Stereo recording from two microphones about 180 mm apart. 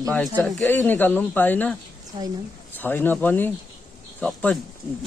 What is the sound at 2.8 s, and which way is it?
Speech, 10° left (ahead or behind).